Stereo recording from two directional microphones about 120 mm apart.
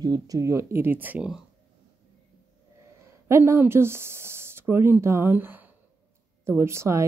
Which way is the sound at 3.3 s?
20° right (ahead or behind).